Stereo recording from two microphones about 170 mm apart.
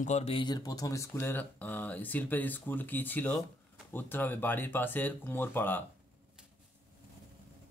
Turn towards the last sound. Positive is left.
turn(degrees=10)  # may be behind; listen again after turning